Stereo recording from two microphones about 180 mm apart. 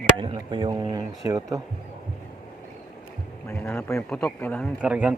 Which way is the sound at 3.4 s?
10° left (ahead or behind).